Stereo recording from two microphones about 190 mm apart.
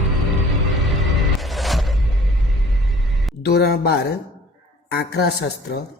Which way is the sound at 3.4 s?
60° left (ahead or behind).